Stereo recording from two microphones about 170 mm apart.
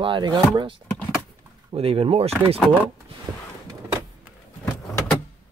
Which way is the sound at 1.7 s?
35° right (ahead or behind).